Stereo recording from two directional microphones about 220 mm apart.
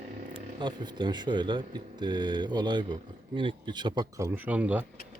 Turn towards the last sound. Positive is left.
turn(degrees=-5)  # may be behind; listen again after turning